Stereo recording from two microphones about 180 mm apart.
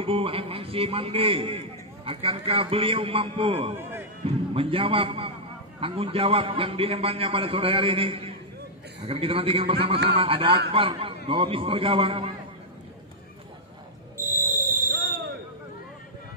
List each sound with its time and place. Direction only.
0.0 s a man's voice: 30° right (ahead or behind)
14.1 s fire alarm: 15° right (ahead or behind)